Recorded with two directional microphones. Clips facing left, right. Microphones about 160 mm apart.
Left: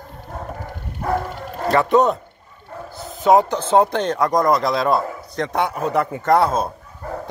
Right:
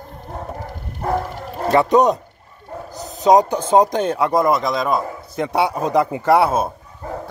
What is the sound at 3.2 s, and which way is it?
Speech, 15° right (ahead or behind).